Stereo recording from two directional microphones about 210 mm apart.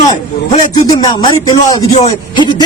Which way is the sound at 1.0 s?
20° left (ahead or behind).